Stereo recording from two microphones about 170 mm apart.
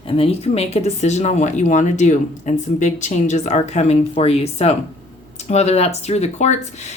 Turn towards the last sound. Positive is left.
turn(degrees=40)  # may be behind; listen again after turning